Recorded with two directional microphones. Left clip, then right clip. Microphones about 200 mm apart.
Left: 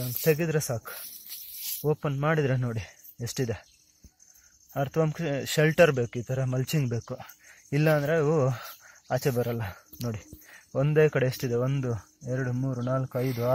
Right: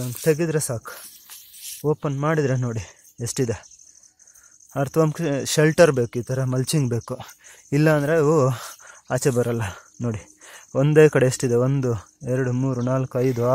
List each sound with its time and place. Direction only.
0.2 s speech: 25° right (ahead or behind)
4.7 s speech: 35° right (ahead or behind)